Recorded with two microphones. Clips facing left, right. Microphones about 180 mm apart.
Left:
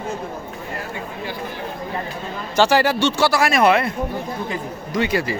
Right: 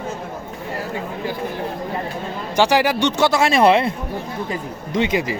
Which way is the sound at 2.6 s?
15° right (ahead or behind).